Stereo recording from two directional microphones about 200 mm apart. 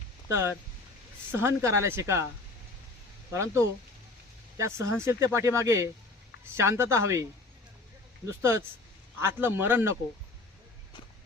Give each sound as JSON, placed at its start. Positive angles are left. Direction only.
{"t": 0.3, "sound": "speech", "side_deg": -15}
{"t": 3.3, "sound": "speech", "side_deg": -15}
{"t": 8.4, "sound": "speech", "side_deg": -15}